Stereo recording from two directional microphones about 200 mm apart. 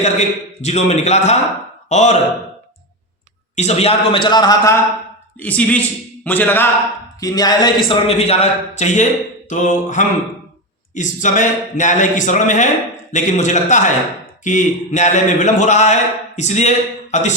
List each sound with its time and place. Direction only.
0.0 s a man's voice: 35° left (ahead or behind)
3.5 s a man's voice: 35° left (ahead or behind); by 7.7 s 20° left (ahead or behind)
7.9 s a man's voice: 30° left (ahead or behind)